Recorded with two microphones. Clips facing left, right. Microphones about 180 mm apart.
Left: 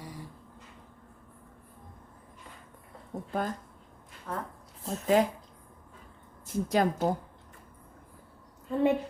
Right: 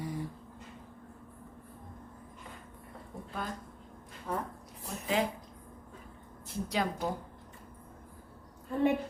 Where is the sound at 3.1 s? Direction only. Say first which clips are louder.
Left 7 dB; 45° left (ahead or behind).